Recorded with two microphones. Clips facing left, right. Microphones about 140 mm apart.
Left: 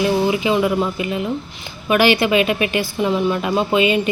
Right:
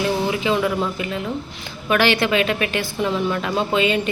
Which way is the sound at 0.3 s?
10° left (ahead or behind).